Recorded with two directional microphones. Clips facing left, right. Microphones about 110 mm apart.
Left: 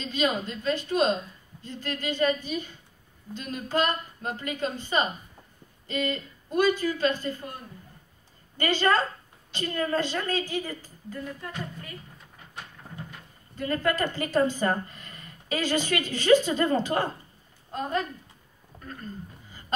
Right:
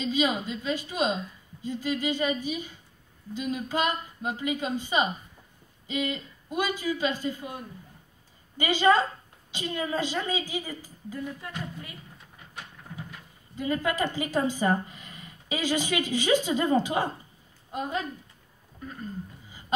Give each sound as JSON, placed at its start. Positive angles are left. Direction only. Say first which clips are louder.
{"t": 0.0, "sound": "speech", "louder": "right 1 dB", "side_deg": -10}
{"t": 8.5, "sound": "speech", "louder": "right 2 dB", "side_deg": -10}
{"t": 13.6, "sound": "speech", "louder": "left 1 dB", "side_deg": -10}
{"t": 18.7, "sound": "a sound", "louder": "right 4 dB", "side_deg": 30}